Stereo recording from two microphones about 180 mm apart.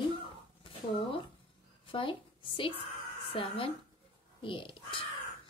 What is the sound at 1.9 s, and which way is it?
A woman's voice, 30° left (ahead or behind).